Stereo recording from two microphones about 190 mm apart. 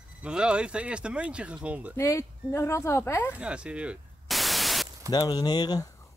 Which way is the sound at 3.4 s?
5° right (ahead or behind).